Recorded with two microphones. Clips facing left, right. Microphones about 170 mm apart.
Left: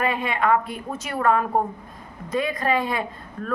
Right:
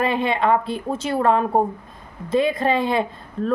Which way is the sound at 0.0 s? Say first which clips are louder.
Right 3 dB; 30° right (ahead or behind).